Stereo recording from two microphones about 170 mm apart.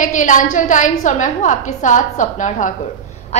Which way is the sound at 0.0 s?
50° left (ahead or behind).